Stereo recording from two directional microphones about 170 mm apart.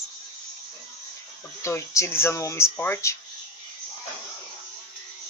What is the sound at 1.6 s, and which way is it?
Speech, 15° left (ahead or behind).